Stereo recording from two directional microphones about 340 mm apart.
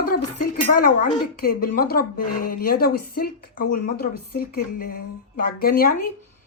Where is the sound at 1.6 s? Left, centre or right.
Left.